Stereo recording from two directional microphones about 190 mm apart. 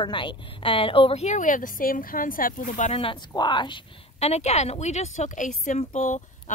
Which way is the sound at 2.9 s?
30° left (ahead or behind).